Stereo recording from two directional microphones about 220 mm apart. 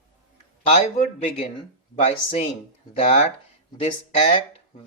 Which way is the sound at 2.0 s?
30° left (ahead or behind).